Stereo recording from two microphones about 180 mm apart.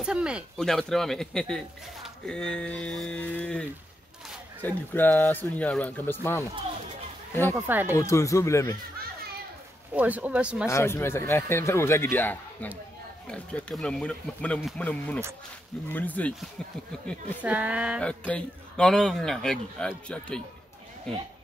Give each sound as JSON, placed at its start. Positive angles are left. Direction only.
{"t": 0.0, "sound": "a man's voice", "side_deg": -5}
{"t": 7.5, "sound": "speech", "side_deg": -10}
{"t": 7.9, "sound": "speech", "side_deg": 15}
{"t": 9.9, "sound": "speech", "side_deg": -10}
{"t": 10.7, "sound": "a man's voice", "side_deg": 15}
{"t": 17.4, "sound": "speech", "side_deg": -10}
{"t": 18.0, "sound": "a man's voice", "side_deg": 5}